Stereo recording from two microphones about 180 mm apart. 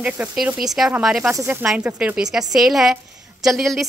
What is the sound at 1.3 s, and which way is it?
A woman's voice, 15° right (ahead or behind).